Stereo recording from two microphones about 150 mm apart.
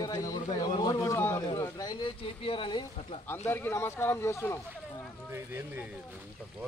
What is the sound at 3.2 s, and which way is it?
Speech, 15° left (ahead or behind).